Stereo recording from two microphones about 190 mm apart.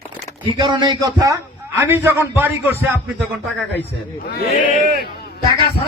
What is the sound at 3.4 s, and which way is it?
Speech, 10° left (ahead or behind).